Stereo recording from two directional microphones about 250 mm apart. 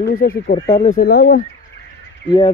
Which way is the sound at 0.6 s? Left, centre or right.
Centre.